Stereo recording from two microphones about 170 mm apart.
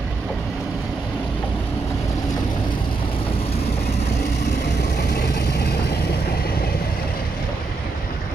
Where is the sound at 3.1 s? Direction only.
35° left (ahead or behind).